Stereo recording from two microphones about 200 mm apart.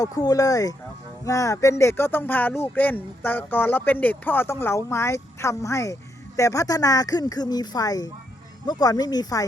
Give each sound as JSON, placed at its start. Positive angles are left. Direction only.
{"t": 0.0, "sound": "speech", "side_deg": 20}